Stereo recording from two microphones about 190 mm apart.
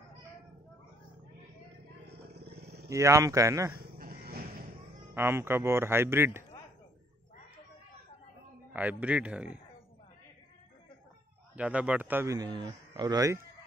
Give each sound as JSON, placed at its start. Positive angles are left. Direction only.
{"t": 2.5, "sound": "a sound", "side_deg": -60}
{"t": 2.9, "sound": "speech", "side_deg": -15}
{"t": 4.0, "sound": "a sound", "side_deg": -50}
{"t": 5.1, "sound": "speech", "side_deg": -10}
{"t": 8.7, "sound": "speech", "side_deg": -5}
{"t": 11.5, "sound": "speech", "side_deg": -5}